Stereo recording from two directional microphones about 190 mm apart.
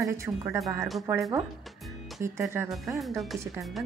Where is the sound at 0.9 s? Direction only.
Centre (ahead or behind).